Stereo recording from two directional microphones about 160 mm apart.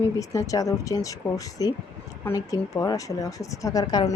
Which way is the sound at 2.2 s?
20° left (ahead or behind).